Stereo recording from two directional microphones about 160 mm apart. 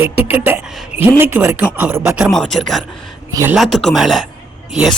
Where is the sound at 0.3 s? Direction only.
15° right (ahead or behind).